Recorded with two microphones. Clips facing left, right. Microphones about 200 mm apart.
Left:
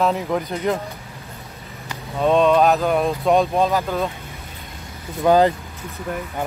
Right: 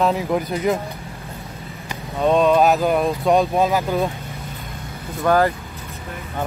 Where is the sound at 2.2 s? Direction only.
Centre (ahead or behind).